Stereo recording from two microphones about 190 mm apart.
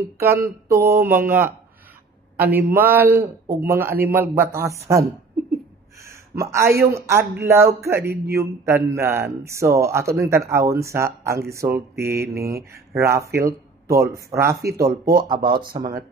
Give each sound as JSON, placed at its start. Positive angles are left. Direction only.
{"t": 0.2, "sound": "speech", "side_deg": -15}
{"t": 6.0, "sound": "a sound", "side_deg": -15}
{"t": 6.9, "sound": "speech", "side_deg": -15}